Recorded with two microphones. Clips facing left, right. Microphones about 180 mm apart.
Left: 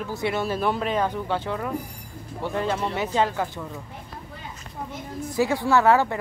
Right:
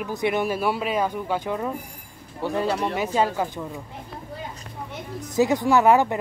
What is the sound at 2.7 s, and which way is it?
Speech, 15° right (ahead or behind).